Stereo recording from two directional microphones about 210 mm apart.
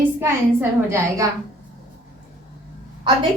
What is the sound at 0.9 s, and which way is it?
Speech, 15° right (ahead or behind).